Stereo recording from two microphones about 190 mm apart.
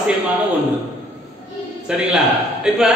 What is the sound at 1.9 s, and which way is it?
Speech, 5° right (ahead or behind).